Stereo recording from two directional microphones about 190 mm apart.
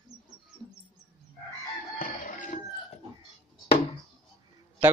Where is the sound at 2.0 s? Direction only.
45° left (ahead or behind).